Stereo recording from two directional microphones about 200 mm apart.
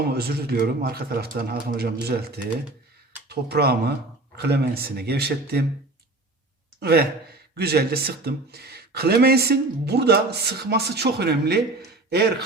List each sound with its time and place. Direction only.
0.1 s speech: 50° right (ahead or behind)
6.7 s speech: 55° right (ahead or behind)